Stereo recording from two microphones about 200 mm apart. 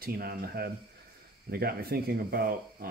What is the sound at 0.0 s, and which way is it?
Speech, 50° right (ahead or behind).